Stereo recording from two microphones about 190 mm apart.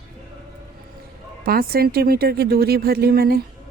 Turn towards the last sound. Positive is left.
turn(degrees=-55)  # may be behind; listen again after turning